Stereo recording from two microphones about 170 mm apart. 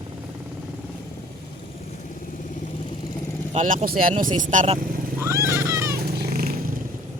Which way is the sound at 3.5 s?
45° right (ahead or behind).